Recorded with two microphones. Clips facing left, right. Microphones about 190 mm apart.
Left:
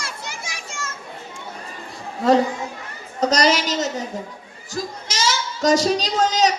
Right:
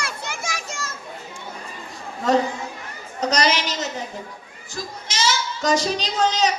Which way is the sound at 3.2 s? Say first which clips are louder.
Left 3 dB; 40° left (ahead or behind).